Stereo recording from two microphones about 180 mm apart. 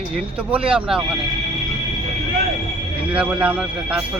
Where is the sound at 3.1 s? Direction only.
10° right (ahead or behind).